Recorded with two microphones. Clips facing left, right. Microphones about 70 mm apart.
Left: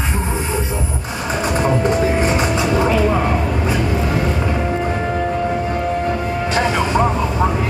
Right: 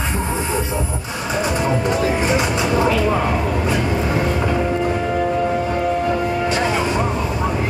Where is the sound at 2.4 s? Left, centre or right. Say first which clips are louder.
Left 1 dB; left.